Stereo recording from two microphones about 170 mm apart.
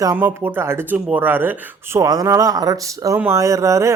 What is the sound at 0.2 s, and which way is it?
Speech, 10° right (ahead or behind).